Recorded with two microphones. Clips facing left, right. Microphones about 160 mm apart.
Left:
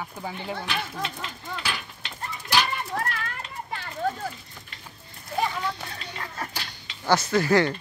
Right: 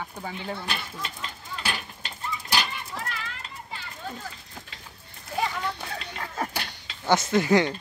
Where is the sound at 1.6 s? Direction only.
40° right (ahead or behind).